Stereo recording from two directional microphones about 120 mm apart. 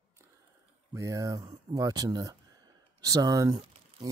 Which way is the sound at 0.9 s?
25° right (ahead or behind).